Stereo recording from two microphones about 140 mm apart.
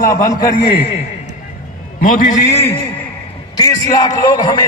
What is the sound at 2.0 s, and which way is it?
Speech, 70° left (ahead or behind).